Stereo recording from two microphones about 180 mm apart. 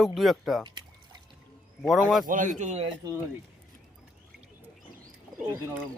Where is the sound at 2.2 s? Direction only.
45° right (ahead or behind).